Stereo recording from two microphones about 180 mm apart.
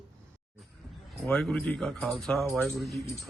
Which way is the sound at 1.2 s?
Centre (ahead or behind).